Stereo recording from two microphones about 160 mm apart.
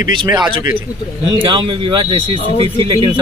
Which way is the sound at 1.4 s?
30° right (ahead or behind).